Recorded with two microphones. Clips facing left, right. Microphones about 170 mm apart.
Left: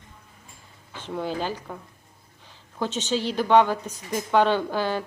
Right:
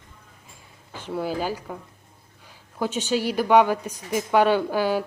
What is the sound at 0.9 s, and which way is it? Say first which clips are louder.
Speech: right 2 dB; 10° right (ahead or behind).